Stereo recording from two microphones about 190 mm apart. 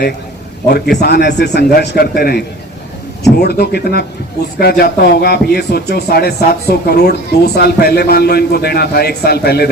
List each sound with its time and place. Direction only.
1.0 s speech: 60° left (ahead or behind)